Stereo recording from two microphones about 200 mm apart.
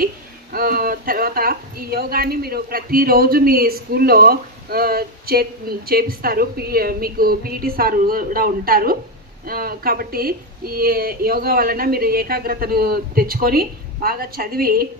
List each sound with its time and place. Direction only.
0.0 s a woman's voice: 45° right (ahead or behind)